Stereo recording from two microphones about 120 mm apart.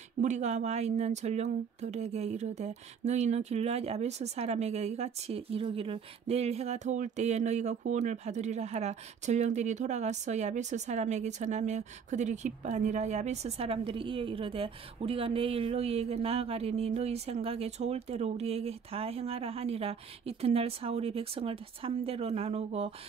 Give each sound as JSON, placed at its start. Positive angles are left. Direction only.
{"t": 0.2, "sound": "speech", "side_deg": -75}